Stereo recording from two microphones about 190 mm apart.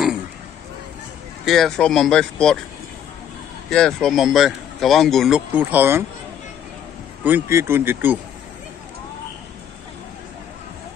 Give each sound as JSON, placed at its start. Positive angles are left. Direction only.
{"t": 1.4, "sound": "speech", "side_deg": 0}
{"t": 3.7, "sound": "speech", "side_deg": 5}
{"t": 7.2, "sound": "speech", "side_deg": -10}